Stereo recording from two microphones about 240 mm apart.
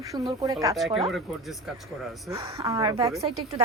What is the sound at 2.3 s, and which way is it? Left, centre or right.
Speech, centre.